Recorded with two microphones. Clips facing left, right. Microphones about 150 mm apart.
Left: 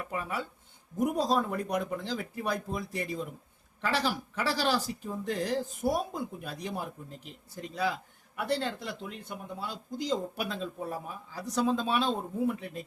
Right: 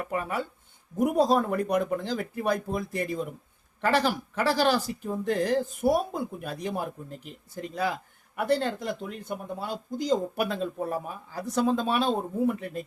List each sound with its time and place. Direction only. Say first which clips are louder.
0.0 s speech: right 5 dB; 55° right (ahead or behind)